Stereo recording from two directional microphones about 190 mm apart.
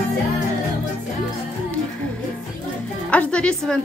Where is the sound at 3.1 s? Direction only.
5° left (ahead or behind).